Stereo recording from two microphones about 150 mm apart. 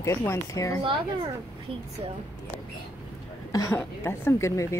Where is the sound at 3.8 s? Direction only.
15° left (ahead or behind).